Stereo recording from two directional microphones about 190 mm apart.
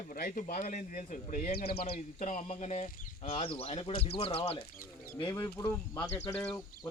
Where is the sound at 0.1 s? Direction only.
45° left (ahead or behind); by 4.5 s 30° left (ahead or behind).